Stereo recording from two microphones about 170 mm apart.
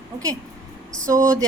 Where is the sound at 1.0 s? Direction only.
20° right (ahead or behind).